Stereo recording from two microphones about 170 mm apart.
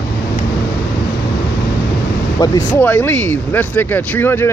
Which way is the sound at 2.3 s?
25° left (ahead or behind).